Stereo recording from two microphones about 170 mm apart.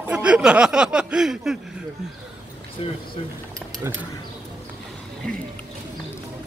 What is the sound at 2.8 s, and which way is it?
Speech, 35° left (ahead or behind).